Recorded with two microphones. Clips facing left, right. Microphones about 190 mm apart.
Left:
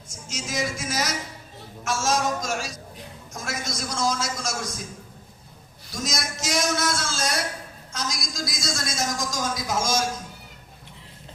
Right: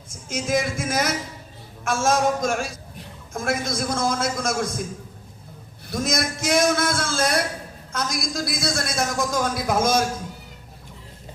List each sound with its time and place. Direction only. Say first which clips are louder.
0.1 s a woman's voice: right 9 dB; 55° right (ahead or behind)
5.9 s a woman's voice: right 6 dB; 55° right (ahead or behind)